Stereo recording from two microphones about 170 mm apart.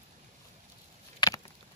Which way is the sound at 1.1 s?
25° left (ahead or behind).